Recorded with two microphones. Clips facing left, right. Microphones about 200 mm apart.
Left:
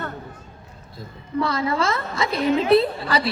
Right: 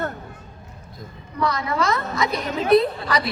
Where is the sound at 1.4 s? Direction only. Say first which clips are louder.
Left 1 dB; 30° left (ahead or behind).